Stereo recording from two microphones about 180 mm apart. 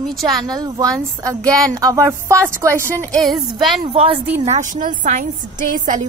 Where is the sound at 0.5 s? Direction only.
20° right (ahead or behind).